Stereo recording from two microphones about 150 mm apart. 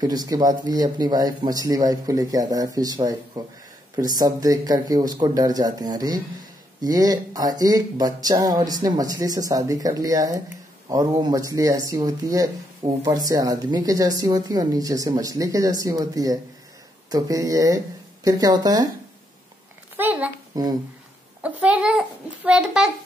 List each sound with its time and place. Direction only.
0.0 s speech: 25° right (ahead or behind)
20.0 s a child's voice: 10° right (ahead or behind)
20.5 s speech: 25° right (ahead or behind)
21.4 s a child's voice: 10° right (ahead or behind)